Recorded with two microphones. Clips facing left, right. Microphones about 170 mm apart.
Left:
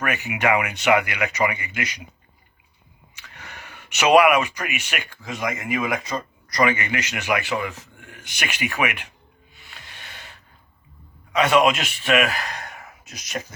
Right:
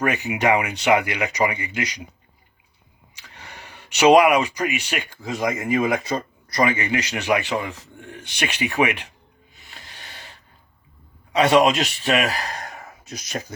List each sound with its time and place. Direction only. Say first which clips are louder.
0.0 s speech: right 2 dB; 30° right (ahead or behind)
3.2 s a sound: even; 35° right (ahead or behind)
4.1 s speech: even; 35° right (ahead or behind)
9.6 s music: right 1 dB; 35° right (ahead or behind)
11.3 s speech: right 2 dB; 30° right (ahead or behind)
12.5 s a sound: right 2 dB; 35° right (ahead or behind)